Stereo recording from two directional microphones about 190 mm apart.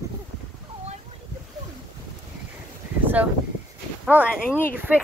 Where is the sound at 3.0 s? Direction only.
10° right (ahead or behind).